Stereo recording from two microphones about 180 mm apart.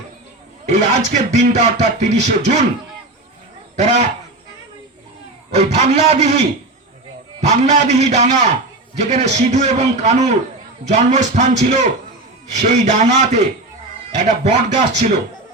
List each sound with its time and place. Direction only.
0.6 s speech: 40° right (ahead or behind)
3.8 s speech: 40° right (ahead or behind)
5.5 s speech: 35° right (ahead or behind)
7.4 s speech: 40° right (ahead or behind)